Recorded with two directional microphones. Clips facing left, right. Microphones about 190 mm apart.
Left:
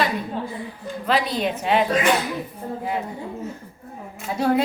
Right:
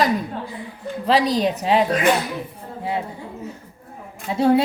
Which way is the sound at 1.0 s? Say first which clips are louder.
Right 4 dB; 35° right (ahead or behind).